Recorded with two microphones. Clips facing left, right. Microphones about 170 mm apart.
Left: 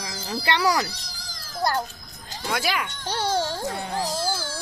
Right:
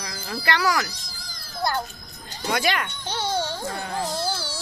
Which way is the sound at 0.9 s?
70° left (ahead or behind).